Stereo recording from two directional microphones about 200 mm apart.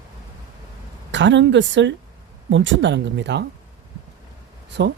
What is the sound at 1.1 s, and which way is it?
Speech, 65° right (ahead or behind).